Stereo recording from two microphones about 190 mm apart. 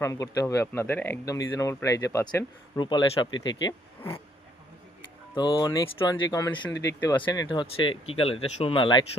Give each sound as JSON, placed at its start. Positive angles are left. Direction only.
{"t": 0.0, "sound": "speech", "side_deg": 15}
{"t": 5.3, "sound": "speech", "side_deg": 25}